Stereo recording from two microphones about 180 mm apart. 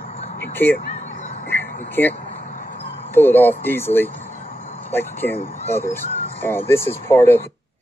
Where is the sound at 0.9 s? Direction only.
40° left (ahead or behind).